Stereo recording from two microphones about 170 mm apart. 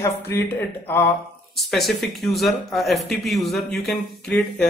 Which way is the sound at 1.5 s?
Centre (ahead or behind).